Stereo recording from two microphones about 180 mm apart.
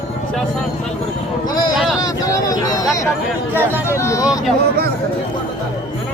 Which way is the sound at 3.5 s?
10° right (ahead or behind).